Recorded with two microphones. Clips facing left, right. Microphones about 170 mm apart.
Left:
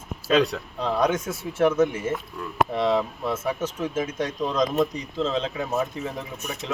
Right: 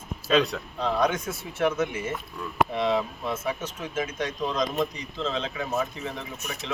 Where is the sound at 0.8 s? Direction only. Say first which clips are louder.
Left 2 dB; 40° left (ahead or behind).